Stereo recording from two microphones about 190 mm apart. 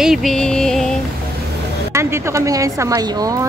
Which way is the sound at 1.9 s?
15° right (ahead or behind).